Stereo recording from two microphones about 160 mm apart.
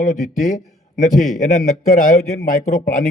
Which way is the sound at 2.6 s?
55° left (ahead or behind).